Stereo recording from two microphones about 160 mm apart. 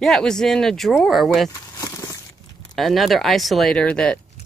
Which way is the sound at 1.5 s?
20° left (ahead or behind).